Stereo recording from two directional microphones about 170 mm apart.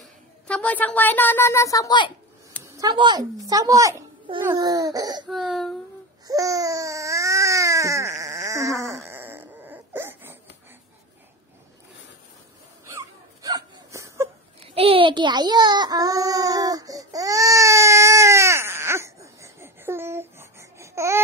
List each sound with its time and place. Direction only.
0.5 s speech: 10° left (ahead or behind); by 2.1 s 25° left (ahead or behind)
2.6 s speech: 25° right (ahead or behind)
5.2 s speech: centre (ahead or behind)
6.2 s baby cry: 20° right (ahead or behind)
12.8 s wail: 20° right (ahead or behind)
14.7 s baby cry: 35° right (ahead or behind); by 21.2 s 15° right (ahead or behind)